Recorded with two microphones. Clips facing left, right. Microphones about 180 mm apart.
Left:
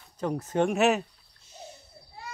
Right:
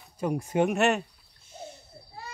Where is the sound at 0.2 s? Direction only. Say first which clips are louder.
Right 1 dB; 10° right (ahead or behind).